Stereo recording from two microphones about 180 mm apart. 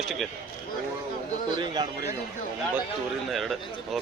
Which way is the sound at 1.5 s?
25° right (ahead or behind).